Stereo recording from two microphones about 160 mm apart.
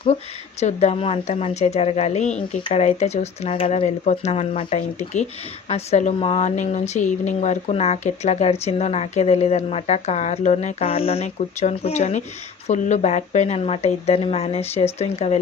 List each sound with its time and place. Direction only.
0.6 s a woman's voice: 45° left (ahead or behind)